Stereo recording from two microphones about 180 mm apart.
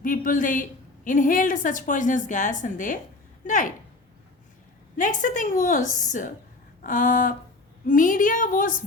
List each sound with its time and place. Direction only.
0.0 s a woman's voice: 50° left (ahead or behind)
4.9 s a woman's voice: 45° left (ahead or behind)